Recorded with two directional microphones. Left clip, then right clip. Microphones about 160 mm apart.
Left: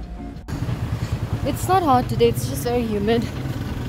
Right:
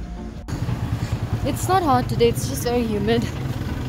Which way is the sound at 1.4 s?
15° left (ahead or behind).